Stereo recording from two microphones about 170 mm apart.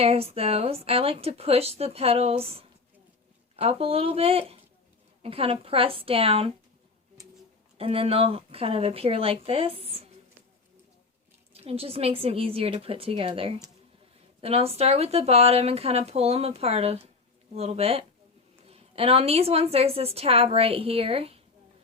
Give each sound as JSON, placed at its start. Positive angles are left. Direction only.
{"t": 0.0, "sound": "a woman's voice", "side_deg": -35}
{"t": 7.8, "sound": "a woman's voice", "side_deg": -35}
{"t": 11.5, "sound": "a woman's voice", "side_deg": -35}